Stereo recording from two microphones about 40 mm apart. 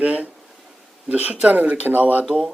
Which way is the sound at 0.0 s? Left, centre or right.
Right.